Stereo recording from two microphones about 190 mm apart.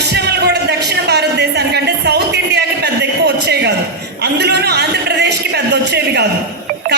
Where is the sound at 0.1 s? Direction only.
60° right (ahead or behind).